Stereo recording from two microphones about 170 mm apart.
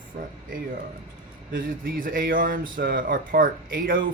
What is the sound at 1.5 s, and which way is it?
Speech, 55° right (ahead or behind).